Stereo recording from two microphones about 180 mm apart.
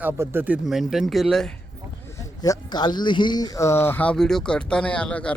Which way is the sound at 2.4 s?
25° left (ahead or behind).